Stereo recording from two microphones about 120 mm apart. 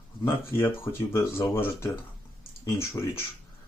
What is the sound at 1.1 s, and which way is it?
Speech, 20° left (ahead or behind).